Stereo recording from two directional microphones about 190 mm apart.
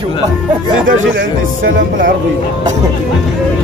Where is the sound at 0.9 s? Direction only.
50° right (ahead or behind).